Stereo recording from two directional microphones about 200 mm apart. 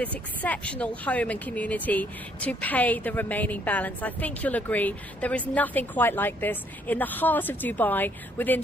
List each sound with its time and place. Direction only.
0.0 s speech: 10° left (ahead or behind)